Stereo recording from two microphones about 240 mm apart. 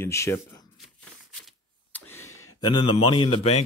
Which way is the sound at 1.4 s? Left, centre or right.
Centre.